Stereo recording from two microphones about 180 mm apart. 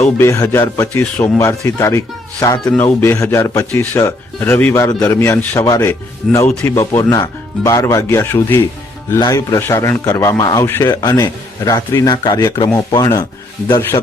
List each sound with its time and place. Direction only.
0.0 s a man's voice: 15° left (ahead or behind)